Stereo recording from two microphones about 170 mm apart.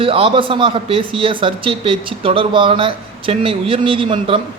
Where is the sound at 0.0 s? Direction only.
30° right (ahead or behind).